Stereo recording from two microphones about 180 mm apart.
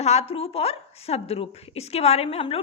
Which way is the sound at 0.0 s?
35° left (ahead or behind).